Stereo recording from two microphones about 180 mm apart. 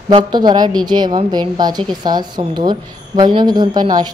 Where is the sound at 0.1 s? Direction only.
25° right (ahead or behind).